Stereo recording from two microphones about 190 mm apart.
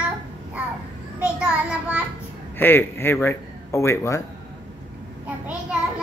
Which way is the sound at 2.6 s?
10° left (ahead or behind).